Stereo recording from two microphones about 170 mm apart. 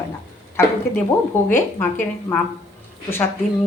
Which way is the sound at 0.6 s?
15° left (ahead or behind).